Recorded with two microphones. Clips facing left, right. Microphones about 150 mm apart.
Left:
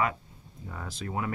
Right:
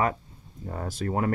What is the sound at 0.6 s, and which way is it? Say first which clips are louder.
Mantra: right 7 dB; 45° right (ahead or behind).